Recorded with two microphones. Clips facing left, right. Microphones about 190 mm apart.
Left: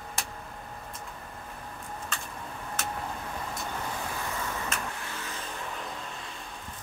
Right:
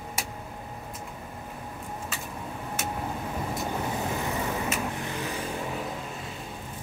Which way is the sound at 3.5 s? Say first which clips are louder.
Right 6 dB; 20° right (ahead or behind).